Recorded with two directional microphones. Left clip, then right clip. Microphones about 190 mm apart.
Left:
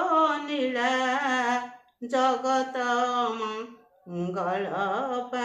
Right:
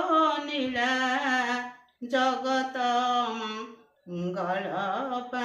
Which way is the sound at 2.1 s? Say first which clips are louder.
Left 2 dB; 20° left (ahead or behind).